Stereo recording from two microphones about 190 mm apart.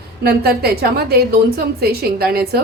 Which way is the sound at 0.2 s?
55° right (ahead or behind).